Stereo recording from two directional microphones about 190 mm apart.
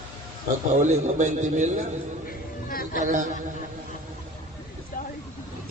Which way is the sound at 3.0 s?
40° right (ahead or behind).